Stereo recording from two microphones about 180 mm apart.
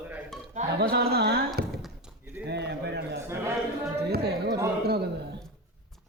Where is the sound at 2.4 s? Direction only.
70° right (ahead or behind).